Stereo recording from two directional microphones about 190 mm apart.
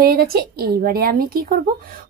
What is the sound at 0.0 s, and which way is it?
A woman's voice, 55° right (ahead or behind).